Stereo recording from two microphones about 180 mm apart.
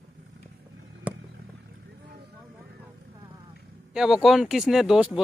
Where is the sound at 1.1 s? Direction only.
10° right (ahead or behind).